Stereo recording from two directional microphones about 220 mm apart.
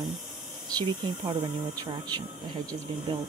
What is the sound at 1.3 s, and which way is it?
Speech, 20° right (ahead or behind).